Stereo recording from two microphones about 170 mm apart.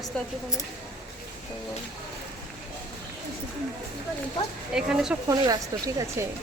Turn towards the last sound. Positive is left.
turn(degrees=-20)  # may be behind; listen again after turning